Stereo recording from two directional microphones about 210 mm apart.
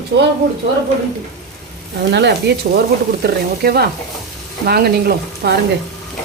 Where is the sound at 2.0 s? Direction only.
55° right (ahead or behind).